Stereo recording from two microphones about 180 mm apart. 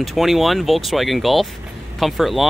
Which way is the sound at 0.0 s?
Centre (ahead or behind).